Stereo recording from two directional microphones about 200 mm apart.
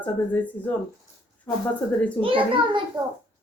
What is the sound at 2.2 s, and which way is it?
Speech, 25° right (ahead or behind).